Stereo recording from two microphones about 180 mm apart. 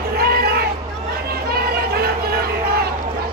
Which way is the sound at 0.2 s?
60° right (ahead or behind).